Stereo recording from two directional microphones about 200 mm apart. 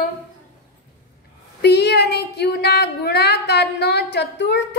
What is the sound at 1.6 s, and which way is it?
Speech, 55° left (ahead or behind).